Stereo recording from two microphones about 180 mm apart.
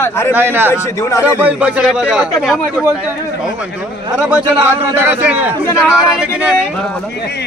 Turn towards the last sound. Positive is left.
turn(degrees=-5)  # may be behind; listen again after turning